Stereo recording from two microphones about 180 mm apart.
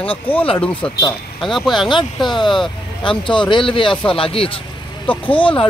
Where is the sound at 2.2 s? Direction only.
25° left (ahead or behind).